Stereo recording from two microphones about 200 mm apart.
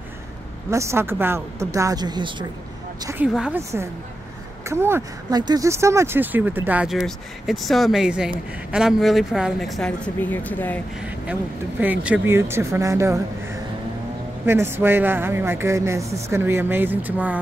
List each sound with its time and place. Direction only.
0.7 s a woman's voice: 15° right (ahead or behind); by 10.8 s 10° left (ahead or behind)
11.0 s speech: 5° right (ahead or behind)